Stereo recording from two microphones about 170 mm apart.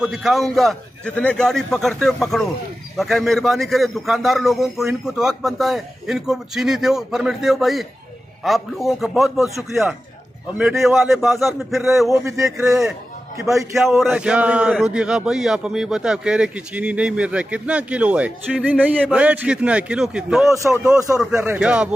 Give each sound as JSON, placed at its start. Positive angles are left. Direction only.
{"t": 0.0, "sound": "speech", "side_deg": 0}
{"t": 12.1, "sound": "speech", "side_deg": -20}
{"t": 13.6, "sound": "speech", "side_deg": 0}